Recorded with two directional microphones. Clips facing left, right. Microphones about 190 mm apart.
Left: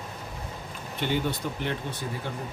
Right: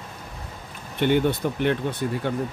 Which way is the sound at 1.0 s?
60° right (ahead or behind).